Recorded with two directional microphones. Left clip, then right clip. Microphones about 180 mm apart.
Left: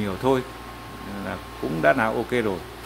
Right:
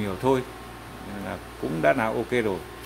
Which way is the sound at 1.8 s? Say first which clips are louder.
Left 2 dB; centre (ahead or behind).